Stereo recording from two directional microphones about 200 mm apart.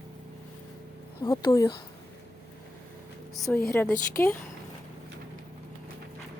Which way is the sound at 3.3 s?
Centre (ahead or behind).